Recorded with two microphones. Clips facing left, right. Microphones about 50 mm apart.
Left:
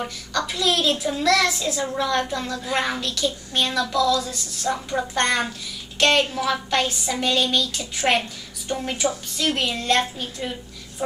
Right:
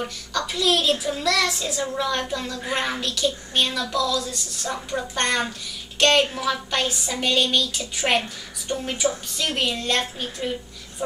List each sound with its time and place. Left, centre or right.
0.0 s a woman's voice: centre
11.0 s speech: centre